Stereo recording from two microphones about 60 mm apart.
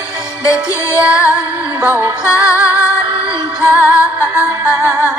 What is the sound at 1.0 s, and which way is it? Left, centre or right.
Music, right.